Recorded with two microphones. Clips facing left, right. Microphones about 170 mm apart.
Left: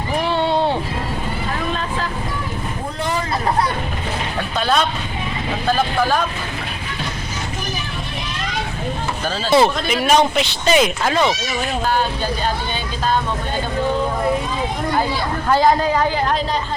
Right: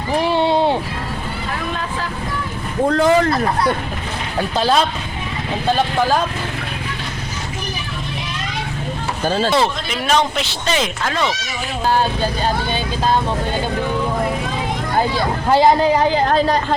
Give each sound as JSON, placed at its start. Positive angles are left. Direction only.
{"t": 2.9, "sound": "a sound", "side_deg": -90}
{"t": 4.5, "sound": "speech", "side_deg": -30}
{"t": 9.2, "sound": "speech", "side_deg": -50}
{"t": 9.5, "sound": "a man's voice", "side_deg": 10}
{"t": 15.4, "sound": "speech", "side_deg": -20}